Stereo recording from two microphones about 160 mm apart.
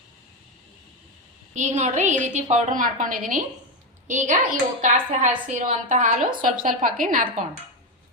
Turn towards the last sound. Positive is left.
turn(degrees=-55)  # may be behind; listen again after turning